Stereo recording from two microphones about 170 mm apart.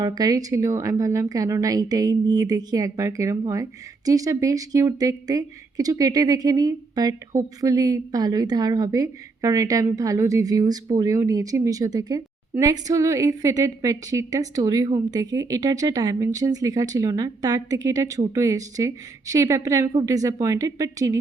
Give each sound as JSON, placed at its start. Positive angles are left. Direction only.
{"t": 0.0, "sound": "speech", "side_deg": -20}